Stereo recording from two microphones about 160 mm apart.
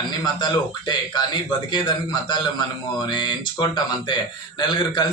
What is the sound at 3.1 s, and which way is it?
A man's voice, 30° left (ahead or behind).